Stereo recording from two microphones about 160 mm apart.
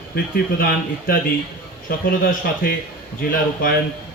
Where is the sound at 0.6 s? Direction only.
65° left (ahead or behind).